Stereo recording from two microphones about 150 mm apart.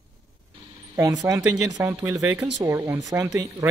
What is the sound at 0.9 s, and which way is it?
A man's voice, 20° right (ahead or behind).